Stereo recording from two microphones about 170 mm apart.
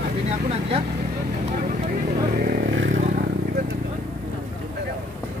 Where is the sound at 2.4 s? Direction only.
60° right (ahead or behind).